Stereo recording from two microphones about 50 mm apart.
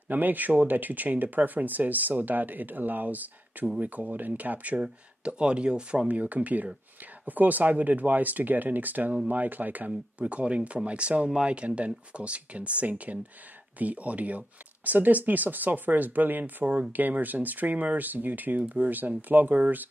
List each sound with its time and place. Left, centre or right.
0.1 s speech: right; by 6.0 s centre
6.0 s speech: right